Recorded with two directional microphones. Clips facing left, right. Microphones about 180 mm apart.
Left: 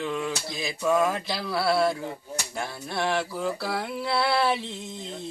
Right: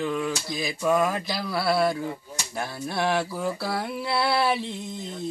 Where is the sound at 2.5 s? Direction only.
5° right (ahead or behind).